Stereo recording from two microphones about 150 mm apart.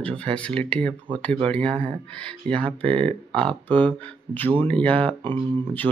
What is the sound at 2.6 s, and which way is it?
Speech, 35° right (ahead or behind).